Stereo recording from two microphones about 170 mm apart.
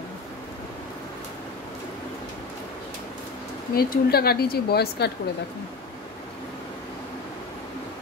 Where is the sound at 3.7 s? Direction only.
65° left (ahead or behind).